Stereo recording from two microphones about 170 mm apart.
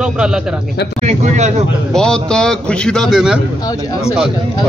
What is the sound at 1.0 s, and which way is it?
Speech, 40° right (ahead or behind).